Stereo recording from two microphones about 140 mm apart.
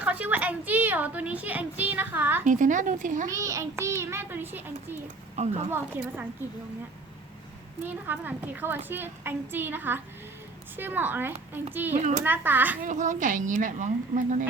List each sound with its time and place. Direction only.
0.0 s a woman's voice: 10° right (ahead or behind)
2.4 s speech: 65° right (ahead or behind)
3.2 s a child's voice: 20° right (ahead or behind)
5.4 s speech: 55° right (ahead or behind)
5.7 s a woman's voice: 15° right (ahead or behind)
7.8 s a woman's voice: 15° right (ahead or behind)
12.8 s a woman's voice: 60° right (ahead or behind)